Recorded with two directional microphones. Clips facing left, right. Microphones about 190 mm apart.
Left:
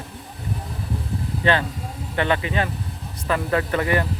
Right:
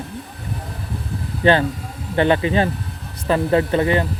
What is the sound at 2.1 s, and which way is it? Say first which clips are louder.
Speech: right 6 dB; 30° right (ahead or behind).